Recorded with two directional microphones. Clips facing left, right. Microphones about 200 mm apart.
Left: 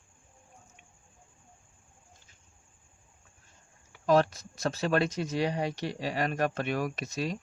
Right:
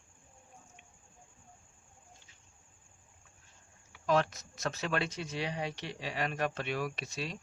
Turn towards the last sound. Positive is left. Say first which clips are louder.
# left 6 dB
turn(degrees=45)  # may be behind; listen again after turning